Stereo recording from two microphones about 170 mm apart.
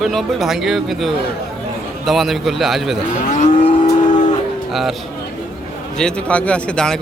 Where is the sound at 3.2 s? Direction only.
45° left (ahead or behind).